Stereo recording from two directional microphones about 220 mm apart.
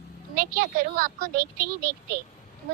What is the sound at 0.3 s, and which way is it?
A woman's voice, 40° right (ahead or behind).